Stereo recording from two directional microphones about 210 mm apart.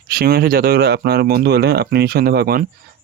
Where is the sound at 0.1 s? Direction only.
45° right (ahead or behind).